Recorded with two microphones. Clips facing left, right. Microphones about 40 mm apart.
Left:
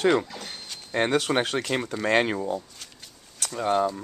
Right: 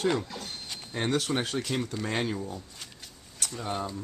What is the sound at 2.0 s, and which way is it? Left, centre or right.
Speech, left.